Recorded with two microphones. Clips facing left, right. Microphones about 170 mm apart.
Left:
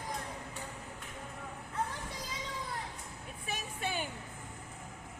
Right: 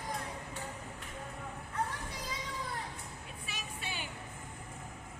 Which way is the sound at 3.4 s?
50° left (ahead or behind).